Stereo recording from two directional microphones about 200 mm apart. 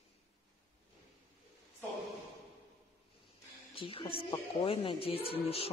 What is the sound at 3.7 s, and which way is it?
A woman's voice, 25° left (ahead or behind).